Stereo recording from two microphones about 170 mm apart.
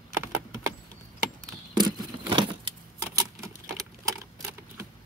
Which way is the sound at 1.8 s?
25° right (ahead or behind).